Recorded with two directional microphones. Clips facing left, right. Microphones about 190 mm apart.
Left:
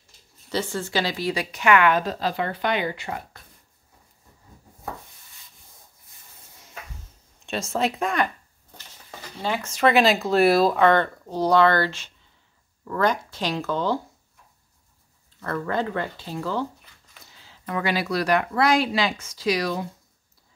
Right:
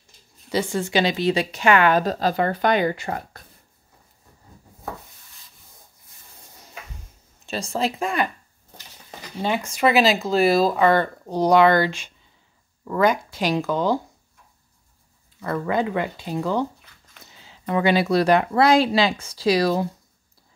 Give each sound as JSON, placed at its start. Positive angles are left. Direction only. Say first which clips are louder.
{"t": 0.5, "sound": "speech", "louder": "right 4 dB", "side_deg": -15}
{"t": 7.4, "sound": "speech", "louder": "even", "side_deg": 0}
{"t": 9.4, "sound": "speech", "louder": "right 1 dB", "side_deg": -15}
{"t": 15.4, "sound": "speech", "louder": "right 3 dB", "side_deg": -15}